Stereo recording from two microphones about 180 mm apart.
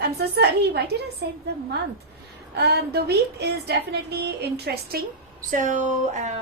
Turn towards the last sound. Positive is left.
turn(degrees=-40)  # may be behind; listen again after turning